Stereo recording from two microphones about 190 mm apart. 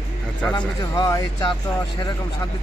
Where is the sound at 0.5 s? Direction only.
20° left (ahead or behind).